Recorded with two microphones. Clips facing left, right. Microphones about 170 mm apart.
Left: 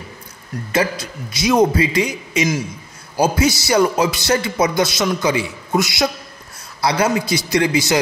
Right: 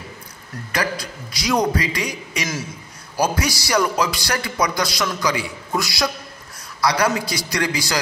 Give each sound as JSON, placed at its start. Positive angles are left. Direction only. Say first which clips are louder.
{"t": 0.7, "sound": "a man's voice", "louder": "left 5 dB", "side_deg": 25}